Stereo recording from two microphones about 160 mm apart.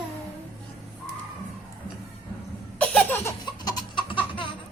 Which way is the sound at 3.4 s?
25° left (ahead or behind).